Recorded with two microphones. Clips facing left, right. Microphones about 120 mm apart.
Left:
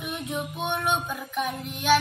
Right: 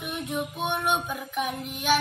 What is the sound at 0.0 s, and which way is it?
Music, centre (ahead or behind).